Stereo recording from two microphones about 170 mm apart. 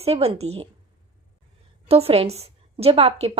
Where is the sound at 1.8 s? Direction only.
35° right (ahead or behind).